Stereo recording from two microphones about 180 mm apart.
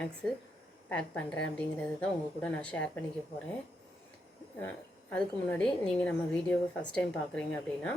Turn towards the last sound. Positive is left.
turn(degrees=5)  # may be behind; listen again after turning